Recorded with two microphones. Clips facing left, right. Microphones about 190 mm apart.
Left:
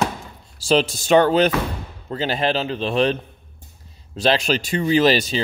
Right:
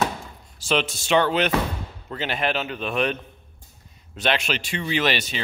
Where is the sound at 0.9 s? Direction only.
40° left (ahead or behind).